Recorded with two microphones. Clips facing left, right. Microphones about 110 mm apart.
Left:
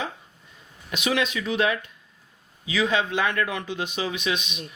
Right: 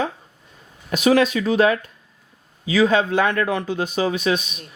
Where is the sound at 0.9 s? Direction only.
40° right (ahead or behind).